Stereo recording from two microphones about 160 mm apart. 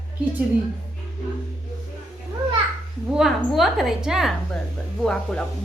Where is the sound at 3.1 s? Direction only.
Centre (ahead or behind).